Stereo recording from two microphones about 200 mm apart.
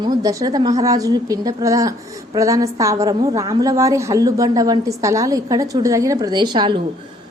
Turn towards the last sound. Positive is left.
turn(degrees=-25)  # may be behind; listen again after turning